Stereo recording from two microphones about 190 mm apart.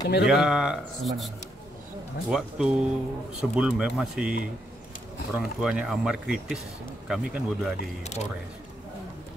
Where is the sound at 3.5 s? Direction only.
5° right (ahead or behind).